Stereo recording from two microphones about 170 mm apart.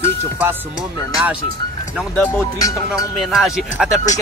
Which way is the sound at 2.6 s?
20° left (ahead or behind).